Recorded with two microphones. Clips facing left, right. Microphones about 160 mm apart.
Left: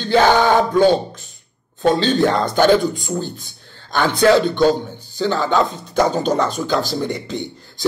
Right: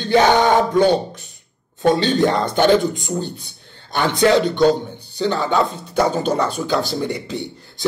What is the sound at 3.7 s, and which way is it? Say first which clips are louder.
A man's voice: left 1 dB; 20° right (ahead or behind).